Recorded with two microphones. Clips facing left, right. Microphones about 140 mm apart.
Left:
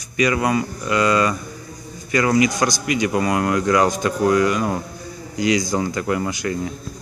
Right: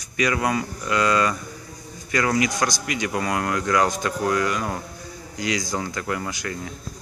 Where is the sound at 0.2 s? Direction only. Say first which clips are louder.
Left 4 dB; 10° left (ahead or behind).